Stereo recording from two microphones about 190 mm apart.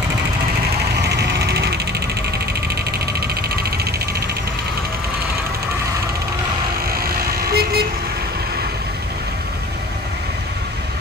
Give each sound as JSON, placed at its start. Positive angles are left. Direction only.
{"t": 1.0, "sound": "a sound", "side_deg": -60}
{"t": 2.7, "sound": "vehicle", "side_deg": -55}
{"t": 6.9, "sound": "vehicle", "side_deg": -50}